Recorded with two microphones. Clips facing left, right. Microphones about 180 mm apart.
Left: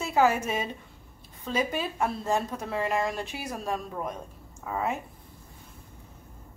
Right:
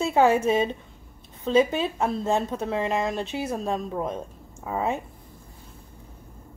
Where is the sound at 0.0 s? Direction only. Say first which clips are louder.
Right 4 dB; 30° right (ahead or behind).